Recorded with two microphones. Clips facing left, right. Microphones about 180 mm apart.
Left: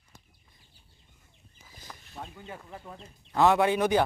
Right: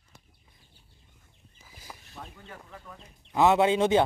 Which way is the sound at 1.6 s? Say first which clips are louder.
Right 1 dB; 5° right (ahead or behind).